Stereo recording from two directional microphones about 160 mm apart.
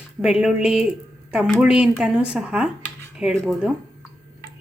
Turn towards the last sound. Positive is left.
turn(degrees=-5)  # may be behind; listen again after turning